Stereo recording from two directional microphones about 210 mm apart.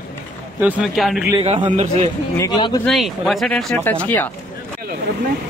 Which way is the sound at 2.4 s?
15° left (ahead or behind).